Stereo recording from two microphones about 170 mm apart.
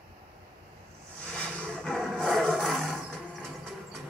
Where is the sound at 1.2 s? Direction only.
5° left (ahead or behind).